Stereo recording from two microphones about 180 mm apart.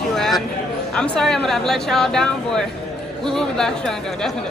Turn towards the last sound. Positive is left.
turn(degrees=5)  # may be behind; listen again after turning